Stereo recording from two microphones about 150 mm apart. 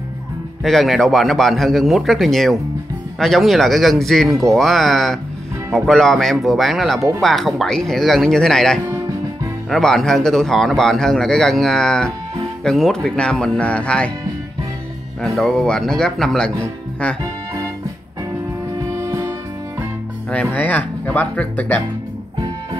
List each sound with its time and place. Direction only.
0.7 s a man's voice: centre (ahead or behind)
15.3 s a man's voice: centre (ahead or behind)
18.8 s music: 20° right (ahead or behind)
20.5 s speech: 10° left (ahead or behind)